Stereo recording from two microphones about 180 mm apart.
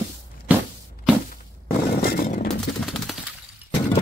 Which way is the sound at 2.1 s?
50° left (ahead or behind).